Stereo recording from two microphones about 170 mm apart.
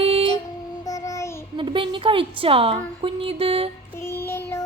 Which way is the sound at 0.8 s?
20° left (ahead or behind).